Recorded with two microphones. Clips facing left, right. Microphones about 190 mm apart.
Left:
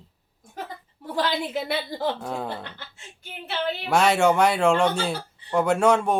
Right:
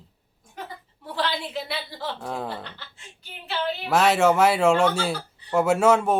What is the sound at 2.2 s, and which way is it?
Speech, centre (ahead or behind).